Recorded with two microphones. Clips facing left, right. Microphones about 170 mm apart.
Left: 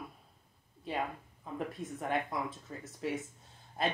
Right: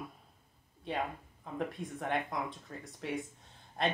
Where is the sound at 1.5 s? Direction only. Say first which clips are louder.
Right 1 dB; centre (ahead or behind).